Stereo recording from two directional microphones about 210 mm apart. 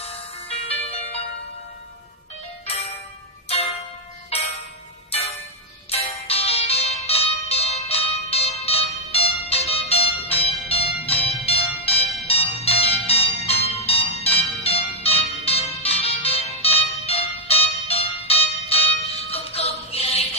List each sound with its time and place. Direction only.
0.0 s music: 30° left (ahead or behind)
2.6 s music: 30° left (ahead or behind)
4.3 s music: 30° left (ahead or behind)
5.9 s music: 30° left (ahead or behind)